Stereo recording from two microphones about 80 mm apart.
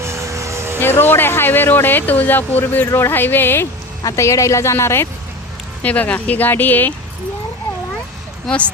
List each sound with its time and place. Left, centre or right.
0.0 s vehicle: right
0.8 s speech: left
4.0 s a woman's voice: left
5.8 s speech: centre
8.4 s speech: centre